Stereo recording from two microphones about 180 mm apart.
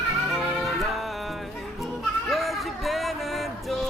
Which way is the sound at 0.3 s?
Centre (ahead or behind).